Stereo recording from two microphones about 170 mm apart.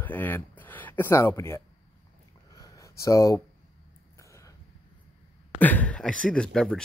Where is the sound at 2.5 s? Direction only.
20° left (ahead or behind).